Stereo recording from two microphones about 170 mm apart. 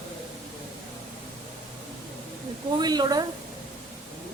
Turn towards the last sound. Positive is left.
turn(degrees=-25)  # may be behind; listen again after turning